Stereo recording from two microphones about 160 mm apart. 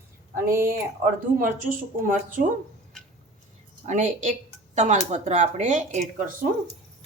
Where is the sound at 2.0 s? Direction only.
55° right (ahead or behind).